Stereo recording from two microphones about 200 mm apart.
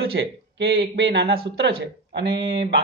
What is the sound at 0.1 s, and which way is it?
Speech, 55° right (ahead or behind).